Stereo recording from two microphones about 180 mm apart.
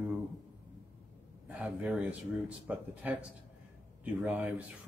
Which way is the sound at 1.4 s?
5° right (ahead or behind).